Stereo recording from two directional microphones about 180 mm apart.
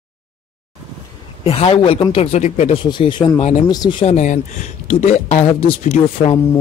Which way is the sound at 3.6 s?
20° left (ahead or behind).